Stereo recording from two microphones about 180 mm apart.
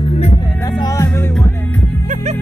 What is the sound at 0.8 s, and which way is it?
Music, 20° left (ahead or behind).